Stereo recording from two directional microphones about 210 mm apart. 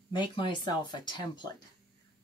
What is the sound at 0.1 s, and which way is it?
Speech, 20° left (ahead or behind).